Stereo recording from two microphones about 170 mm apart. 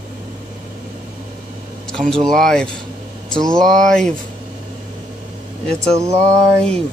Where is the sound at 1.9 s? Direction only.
5° left (ahead or behind).